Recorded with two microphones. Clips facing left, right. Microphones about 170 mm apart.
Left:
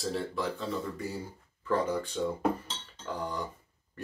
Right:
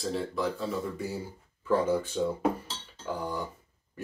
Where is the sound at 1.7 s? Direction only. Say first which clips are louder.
Right 3 dB; 10° right (ahead or behind).